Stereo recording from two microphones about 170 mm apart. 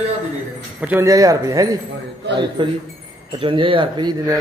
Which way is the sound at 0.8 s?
15° right (ahead or behind).